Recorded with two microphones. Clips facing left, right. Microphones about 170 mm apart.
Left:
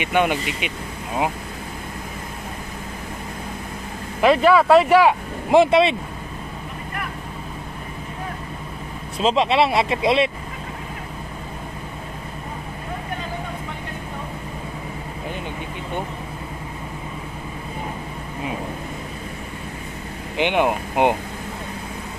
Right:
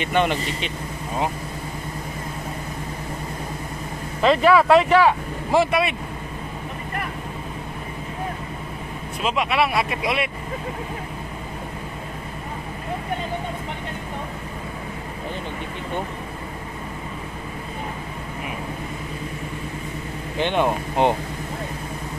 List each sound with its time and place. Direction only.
0.0 s speech: 10° left (ahead or behind)
4.2 s speech: 5° left (ahead or behind); by 5.9 s 25° left (ahead or behind)
9.2 s speech: 25° left (ahead or behind)
20.3 s speech: 15° left (ahead or behind)